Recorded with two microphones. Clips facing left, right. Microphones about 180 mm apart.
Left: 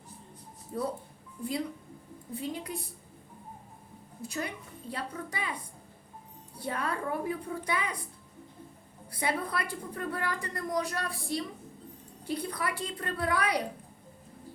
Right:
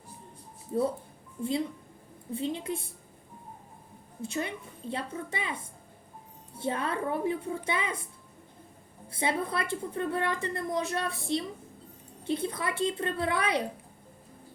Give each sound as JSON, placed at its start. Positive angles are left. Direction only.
{"t": 0.7, "sound": "a woman's voice", "side_deg": -25}
{"t": 4.2, "sound": "a woman's voice", "side_deg": -25}
{"t": 9.1, "sound": "a woman's voice", "side_deg": -25}